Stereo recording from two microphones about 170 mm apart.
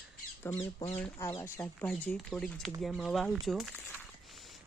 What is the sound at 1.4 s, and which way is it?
Speech, 15° left (ahead or behind).